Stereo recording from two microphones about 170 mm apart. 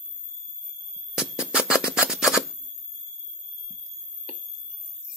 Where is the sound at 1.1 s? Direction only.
5° right (ahead or behind).